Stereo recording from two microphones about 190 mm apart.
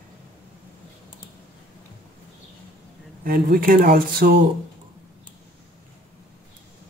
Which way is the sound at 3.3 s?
50° right (ahead or behind).